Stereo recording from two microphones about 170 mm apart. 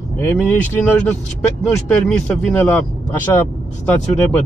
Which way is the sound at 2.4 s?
10° left (ahead or behind).